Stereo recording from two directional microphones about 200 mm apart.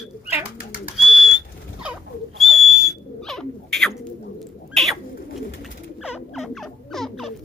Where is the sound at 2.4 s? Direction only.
Centre (ahead or behind).